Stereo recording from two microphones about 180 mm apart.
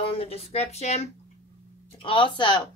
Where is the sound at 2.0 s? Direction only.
25° left (ahead or behind).